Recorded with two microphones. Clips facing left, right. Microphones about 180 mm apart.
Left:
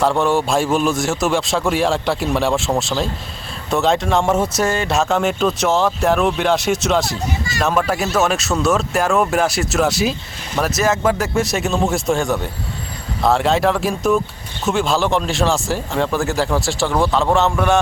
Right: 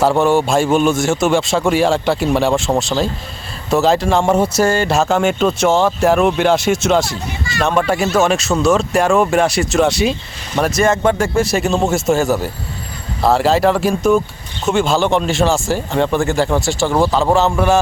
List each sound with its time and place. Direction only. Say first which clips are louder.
0.0 s speech: right 3 dB; centre (ahead or behind)